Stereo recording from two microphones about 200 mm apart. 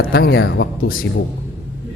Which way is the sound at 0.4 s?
60° left (ahead or behind).